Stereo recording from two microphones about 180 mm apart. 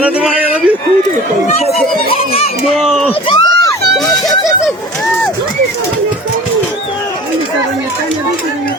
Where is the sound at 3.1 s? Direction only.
25° left (ahead or behind).